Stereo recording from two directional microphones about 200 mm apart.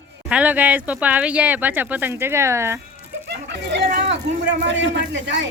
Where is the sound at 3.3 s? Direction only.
55° right (ahead or behind).